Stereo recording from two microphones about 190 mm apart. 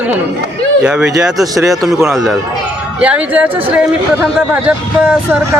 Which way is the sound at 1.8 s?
Centre (ahead or behind).